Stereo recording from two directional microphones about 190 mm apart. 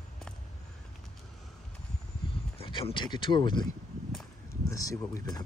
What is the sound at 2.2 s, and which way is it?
Speech, 30° left (ahead or behind).